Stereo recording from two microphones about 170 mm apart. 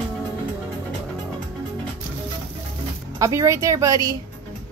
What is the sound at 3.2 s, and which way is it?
Speech, 20° right (ahead or behind).